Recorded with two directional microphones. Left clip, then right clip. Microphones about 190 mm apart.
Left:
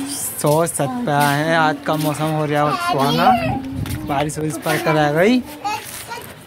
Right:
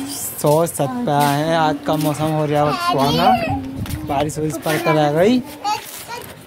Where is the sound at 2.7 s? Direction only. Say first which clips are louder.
Right 1 dB; 30° left (ahead or behind).